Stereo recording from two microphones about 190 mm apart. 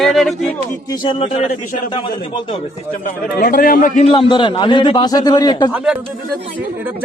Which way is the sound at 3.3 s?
50° left (ahead or behind).